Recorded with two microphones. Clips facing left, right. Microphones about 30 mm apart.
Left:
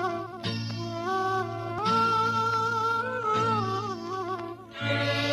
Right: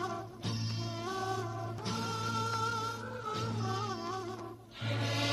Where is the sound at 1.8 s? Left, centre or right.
Left.